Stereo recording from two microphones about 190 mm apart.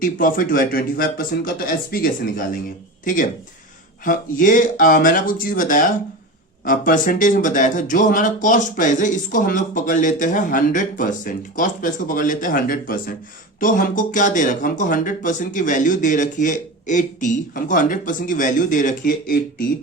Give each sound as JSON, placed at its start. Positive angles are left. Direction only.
{"t": 0.0, "sound": "speech", "side_deg": 45}